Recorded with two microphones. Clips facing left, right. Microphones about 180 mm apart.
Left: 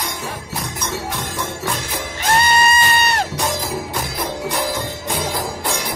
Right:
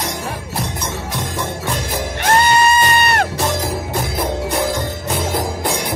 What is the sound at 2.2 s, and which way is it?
Music, 55° right (ahead or behind).